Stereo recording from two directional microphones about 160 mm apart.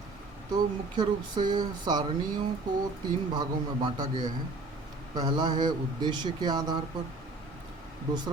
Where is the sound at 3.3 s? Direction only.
25° right (ahead or behind).